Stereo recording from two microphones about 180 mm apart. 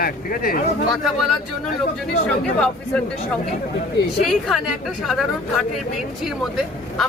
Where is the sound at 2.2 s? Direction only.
5° left (ahead or behind).